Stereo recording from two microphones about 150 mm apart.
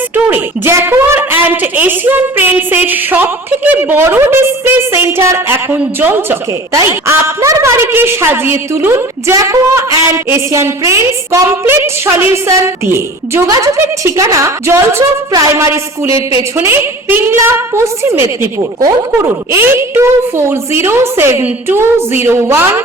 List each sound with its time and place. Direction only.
0.3 s a woman's voice: 15° right (ahead or behind)
19.5 s a woman's voice: 15° right (ahead or behind)